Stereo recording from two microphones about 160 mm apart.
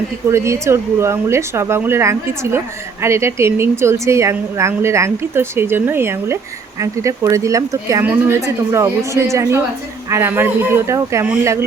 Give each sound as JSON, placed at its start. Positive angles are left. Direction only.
{"t": 0.3, "sound": "a woman's voice", "side_deg": -15}